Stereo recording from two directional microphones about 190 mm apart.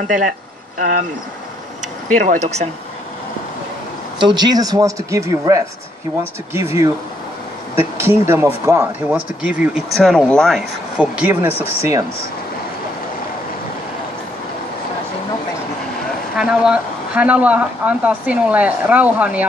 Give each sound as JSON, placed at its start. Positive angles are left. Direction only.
{"t": 0.7, "sound": "speech", "side_deg": -45}
{"t": 2.1, "sound": "speech", "side_deg": -40}
{"t": 4.2, "sound": "speech", "side_deg": -25}
{"t": 16.3, "sound": "speech", "side_deg": -5}